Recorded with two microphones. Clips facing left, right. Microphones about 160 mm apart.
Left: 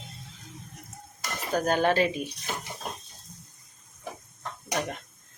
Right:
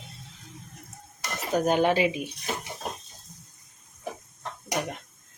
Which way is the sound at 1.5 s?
15° right (ahead or behind).